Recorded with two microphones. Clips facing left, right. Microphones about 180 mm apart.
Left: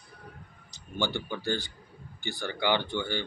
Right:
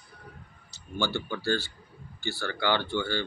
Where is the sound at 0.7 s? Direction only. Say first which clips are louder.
Right 1 dB; 15° left (ahead or behind).